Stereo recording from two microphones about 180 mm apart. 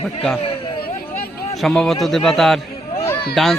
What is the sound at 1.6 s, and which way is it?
A man's voice, centre (ahead or behind).